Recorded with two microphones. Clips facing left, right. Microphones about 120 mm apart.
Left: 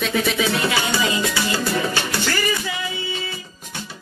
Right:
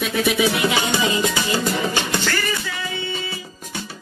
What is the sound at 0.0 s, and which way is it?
Music, 10° right (ahead or behind).